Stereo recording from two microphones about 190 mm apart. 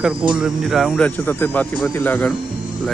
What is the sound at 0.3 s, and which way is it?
Speech, centre (ahead or behind).